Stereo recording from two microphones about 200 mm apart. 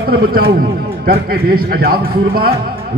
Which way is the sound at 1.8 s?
50° right (ahead or behind).